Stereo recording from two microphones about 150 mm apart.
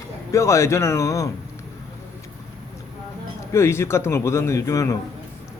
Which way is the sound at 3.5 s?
20° left (ahead or behind).